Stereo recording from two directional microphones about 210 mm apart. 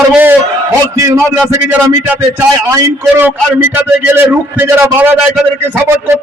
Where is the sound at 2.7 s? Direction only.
15° right (ahead or behind).